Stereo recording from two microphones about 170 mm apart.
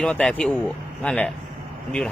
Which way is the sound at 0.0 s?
5° left (ahead or behind).